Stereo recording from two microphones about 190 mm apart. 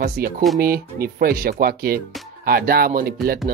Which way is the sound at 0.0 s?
50° right (ahead or behind).